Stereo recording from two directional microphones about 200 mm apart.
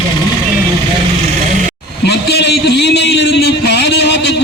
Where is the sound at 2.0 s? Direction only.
55° left (ahead or behind).